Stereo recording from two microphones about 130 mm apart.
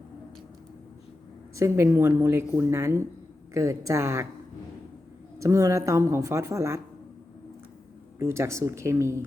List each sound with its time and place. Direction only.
1.5 s speech: 20° right (ahead or behind)
5.4 s speech: 25° right (ahead or behind)
8.2 s speech: 20° right (ahead or behind)